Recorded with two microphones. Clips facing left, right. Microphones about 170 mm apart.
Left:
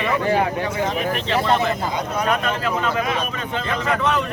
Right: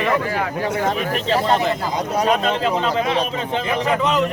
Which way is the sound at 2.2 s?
25° right (ahead or behind).